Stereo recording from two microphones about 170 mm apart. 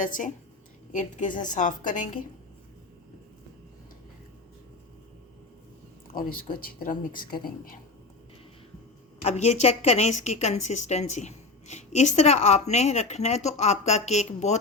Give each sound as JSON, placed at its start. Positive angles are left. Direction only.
{"t": 0.0, "sound": "a woman's voice", "side_deg": 50}
{"t": 6.1, "sound": "speech", "side_deg": 55}
{"t": 9.2, "sound": "a woman's voice", "side_deg": 40}